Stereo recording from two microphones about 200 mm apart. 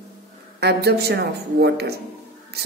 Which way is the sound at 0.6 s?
55° right (ahead or behind).